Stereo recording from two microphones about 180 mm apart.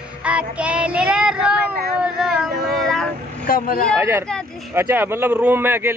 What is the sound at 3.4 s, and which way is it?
Speech, 55° left (ahead or behind).